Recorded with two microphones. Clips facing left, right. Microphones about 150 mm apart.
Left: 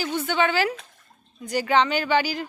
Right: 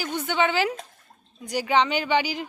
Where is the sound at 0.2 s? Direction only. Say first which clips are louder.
Even; 15° right (ahead or behind).